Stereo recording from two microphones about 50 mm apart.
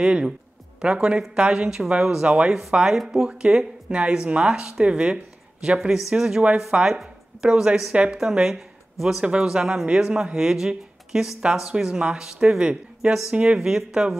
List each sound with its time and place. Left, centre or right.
0.0 s a woman's voice: centre
3.3 s a woman's voice: centre
8.2 s a woman's voice: centre
13.6 s speech: centre